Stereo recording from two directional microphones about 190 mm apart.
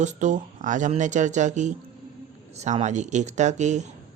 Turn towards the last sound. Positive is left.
turn(degrees=-40)  # may be behind; listen again after turning